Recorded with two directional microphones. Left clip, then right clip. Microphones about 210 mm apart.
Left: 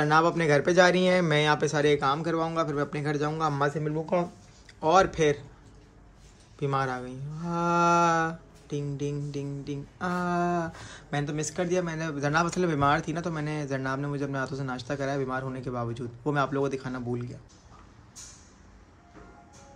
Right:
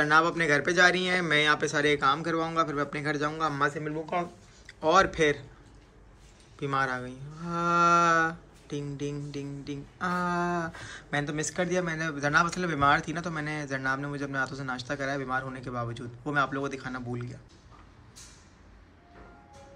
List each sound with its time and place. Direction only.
0.0 s livestock: 25° left (ahead or behind)
6.6 s livestock: 25° left (ahead or behind)